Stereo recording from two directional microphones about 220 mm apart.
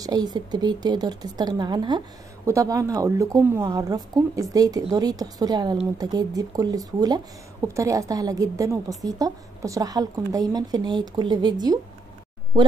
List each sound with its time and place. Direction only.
0.0 s a woman's voice: 15° right (ahead or behind)